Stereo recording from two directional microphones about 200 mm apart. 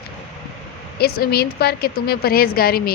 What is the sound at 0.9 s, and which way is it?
A woman's voice, 50° left (ahead or behind).